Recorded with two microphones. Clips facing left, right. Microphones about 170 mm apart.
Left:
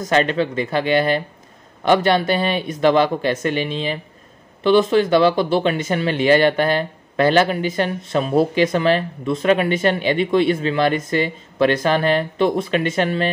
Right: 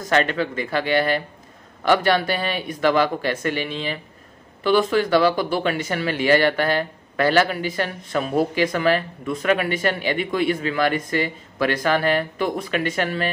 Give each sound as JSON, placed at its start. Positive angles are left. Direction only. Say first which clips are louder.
{"t": 0.1, "sound": "speech", "louder": "left 3 dB", "side_deg": 25}